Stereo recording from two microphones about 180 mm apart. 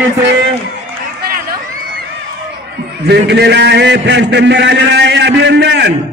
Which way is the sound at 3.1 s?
70° right (ahead or behind).